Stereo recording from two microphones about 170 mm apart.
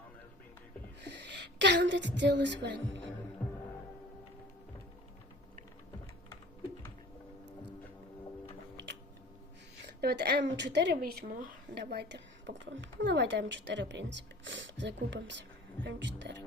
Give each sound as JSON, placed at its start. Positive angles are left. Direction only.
{"t": 1.0, "sound": "a woman's voice", "side_deg": -85}
{"t": 8.7, "sound": "a sound", "side_deg": -90}
{"t": 9.8, "sound": "speech", "side_deg": -75}